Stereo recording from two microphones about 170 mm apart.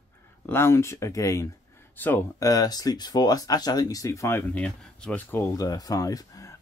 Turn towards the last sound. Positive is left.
turn(degrees=20)  # may be behind; listen again after turning